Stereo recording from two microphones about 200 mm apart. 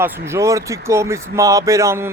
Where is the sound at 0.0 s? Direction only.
15° right (ahead or behind).